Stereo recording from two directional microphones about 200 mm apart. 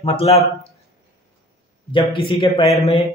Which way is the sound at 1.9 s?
25° left (ahead or behind).